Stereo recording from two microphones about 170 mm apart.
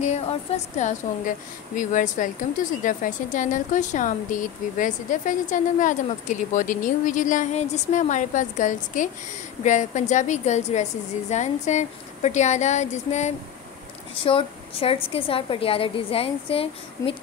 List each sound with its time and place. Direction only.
0.0 s a woman's voice: 40° left (ahead or behind)
14.1 s a woman's voice: 30° left (ahead or behind)